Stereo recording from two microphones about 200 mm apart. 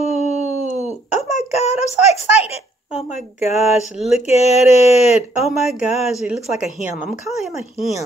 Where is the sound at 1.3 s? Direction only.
35° left (ahead or behind).